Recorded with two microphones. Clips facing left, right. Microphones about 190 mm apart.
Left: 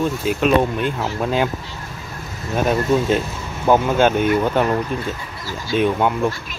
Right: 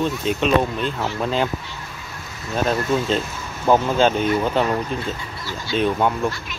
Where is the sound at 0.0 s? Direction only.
5° left (ahead or behind).